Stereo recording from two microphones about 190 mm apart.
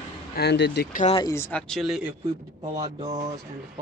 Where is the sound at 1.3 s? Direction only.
10° left (ahead or behind).